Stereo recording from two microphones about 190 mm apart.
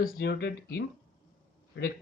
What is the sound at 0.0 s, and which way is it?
Speech, 55° left (ahead or behind).